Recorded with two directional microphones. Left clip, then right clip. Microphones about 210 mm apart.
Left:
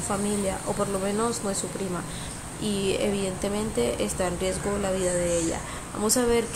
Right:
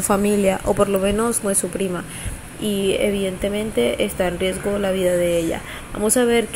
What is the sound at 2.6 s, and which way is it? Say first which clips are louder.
Speech: right 7 dB; 10° right (ahead or behind).